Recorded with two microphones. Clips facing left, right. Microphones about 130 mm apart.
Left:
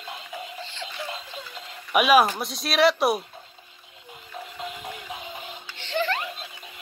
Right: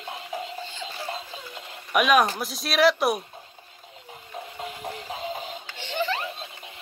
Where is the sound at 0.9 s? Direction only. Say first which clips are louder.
Right 1 dB; 30° right (ahead or behind).